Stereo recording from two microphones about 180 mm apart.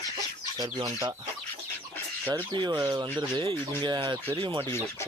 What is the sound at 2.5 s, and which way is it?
Speech, 25° right (ahead or behind).